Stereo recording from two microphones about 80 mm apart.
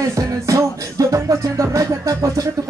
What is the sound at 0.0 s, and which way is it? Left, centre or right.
Music, right.